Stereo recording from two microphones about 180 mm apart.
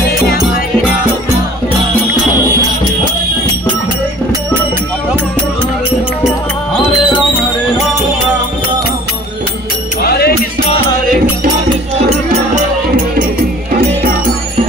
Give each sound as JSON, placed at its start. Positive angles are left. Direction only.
{"t": 10.0, "sound": "music", "side_deg": 60}